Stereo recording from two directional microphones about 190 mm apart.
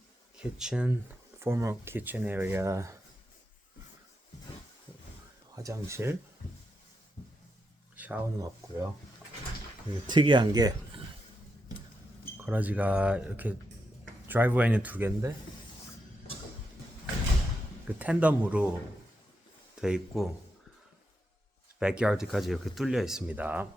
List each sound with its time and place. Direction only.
0.3 s speech: 5° right (ahead or behind)
1.4 s speech: 15° right (ahead or behind)
5.5 s speech: 15° right (ahead or behind)
7.9 s speech: 10° right (ahead or behind)
10.1 s speech: 25° right (ahead or behind)
12.4 s speech: 10° right (ahead or behind)
17.8 s speech: 5° right (ahead or behind)
19.8 s speech: 5° right (ahead or behind)
21.8 s speech: 5° right (ahead or behind)